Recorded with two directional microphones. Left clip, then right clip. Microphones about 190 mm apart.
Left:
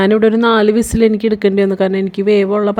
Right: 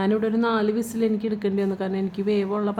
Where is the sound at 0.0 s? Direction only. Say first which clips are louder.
Left 12 dB; 40° left (ahead or behind).